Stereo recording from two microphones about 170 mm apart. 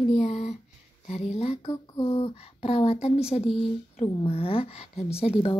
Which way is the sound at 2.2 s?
35° left (ahead or behind).